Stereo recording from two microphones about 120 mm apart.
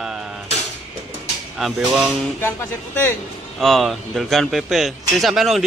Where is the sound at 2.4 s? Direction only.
20° left (ahead or behind).